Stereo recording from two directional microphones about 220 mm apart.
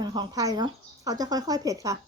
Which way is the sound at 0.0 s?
20° right (ahead or behind).